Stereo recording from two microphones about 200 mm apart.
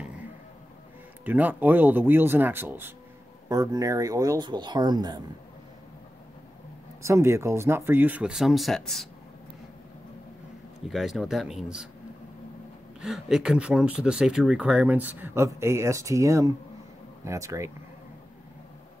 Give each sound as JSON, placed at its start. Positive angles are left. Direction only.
{"t": 1.2, "sound": "speech", "side_deg": -10}
{"t": 7.0, "sound": "speech", "side_deg": -15}
{"t": 10.9, "sound": "speech", "side_deg": 0}
{"t": 13.0, "sound": "speech", "side_deg": -5}